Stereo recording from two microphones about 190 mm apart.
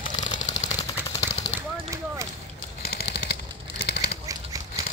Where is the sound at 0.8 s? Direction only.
15° left (ahead or behind).